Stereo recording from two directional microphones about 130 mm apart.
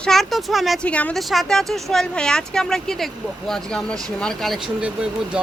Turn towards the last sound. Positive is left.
turn(degrees=-10)  # may be behind; listen again after turning